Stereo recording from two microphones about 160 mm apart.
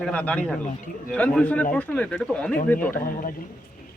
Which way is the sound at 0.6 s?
55° left (ahead or behind).